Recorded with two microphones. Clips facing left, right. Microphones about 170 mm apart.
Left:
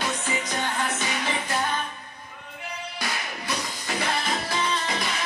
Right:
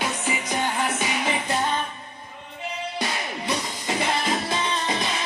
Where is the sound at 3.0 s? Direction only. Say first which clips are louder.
Right 3 dB; 20° right (ahead or behind).